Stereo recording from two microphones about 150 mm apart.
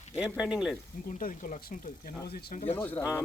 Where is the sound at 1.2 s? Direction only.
85° left.